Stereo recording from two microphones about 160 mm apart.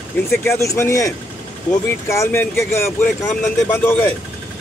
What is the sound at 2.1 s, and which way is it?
Speech, 15° left (ahead or behind).